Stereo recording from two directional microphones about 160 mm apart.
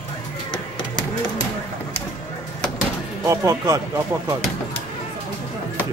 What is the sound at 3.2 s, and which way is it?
Music, 20° right (ahead or behind).